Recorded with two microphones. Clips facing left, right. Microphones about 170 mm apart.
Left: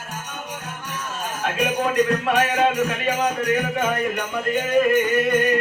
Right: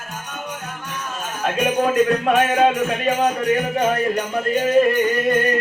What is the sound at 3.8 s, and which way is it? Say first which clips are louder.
Speech: right 4 dB; 30° right (ahead or behind).